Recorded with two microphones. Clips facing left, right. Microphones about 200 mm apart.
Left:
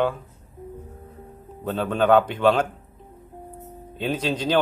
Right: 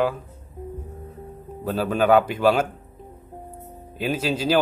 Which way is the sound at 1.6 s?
5° right (ahead or behind).